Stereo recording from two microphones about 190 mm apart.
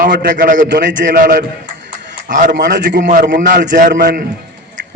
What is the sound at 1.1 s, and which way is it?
A man's voice, 45° right (ahead or behind).